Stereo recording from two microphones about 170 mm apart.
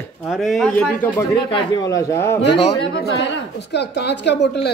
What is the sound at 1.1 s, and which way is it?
A man's voice, 25° left (ahead or behind).